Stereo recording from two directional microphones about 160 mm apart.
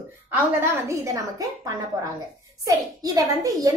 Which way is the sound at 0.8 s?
20° right (ahead or behind).